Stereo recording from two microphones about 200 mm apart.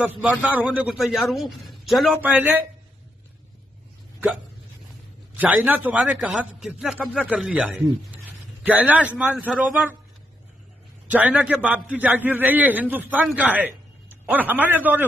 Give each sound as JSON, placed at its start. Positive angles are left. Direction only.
{"t": 0.0, "sound": "a man's voice", "side_deg": -5}
{"t": 5.4, "sound": "a man's voice", "side_deg": -10}
{"t": 11.1, "sound": "a man's voice", "side_deg": -5}